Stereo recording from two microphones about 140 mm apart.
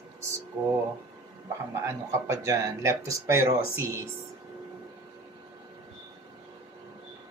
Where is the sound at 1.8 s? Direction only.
20° right (ahead or behind).